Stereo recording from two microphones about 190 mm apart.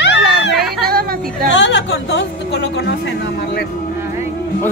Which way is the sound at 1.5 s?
70° left (ahead or behind).